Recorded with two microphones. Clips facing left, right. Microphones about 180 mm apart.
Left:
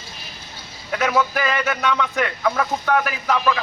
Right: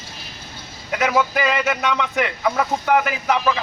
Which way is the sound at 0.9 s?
10° right (ahead or behind).